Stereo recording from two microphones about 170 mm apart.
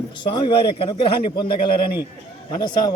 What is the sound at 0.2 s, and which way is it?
A man's voice, 30° left (ahead or behind).